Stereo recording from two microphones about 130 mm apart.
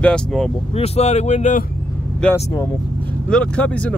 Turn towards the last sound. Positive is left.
turn(degrees=10)  # may be behind; listen again after turning